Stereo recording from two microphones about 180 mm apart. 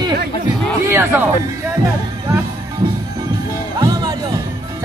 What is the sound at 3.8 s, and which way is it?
Music, 20° right (ahead or behind).